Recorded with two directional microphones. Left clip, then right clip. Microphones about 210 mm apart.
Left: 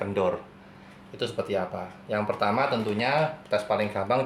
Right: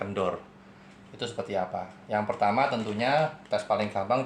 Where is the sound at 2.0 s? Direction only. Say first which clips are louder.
Even; 25° left (ahead or behind).